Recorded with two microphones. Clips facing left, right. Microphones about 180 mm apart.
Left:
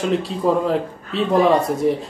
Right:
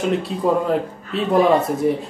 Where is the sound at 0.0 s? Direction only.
Centre (ahead or behind).